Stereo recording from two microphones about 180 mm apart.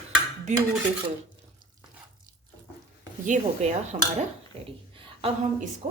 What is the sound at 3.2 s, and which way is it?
A woman's voice, 40° right (ahead or behind).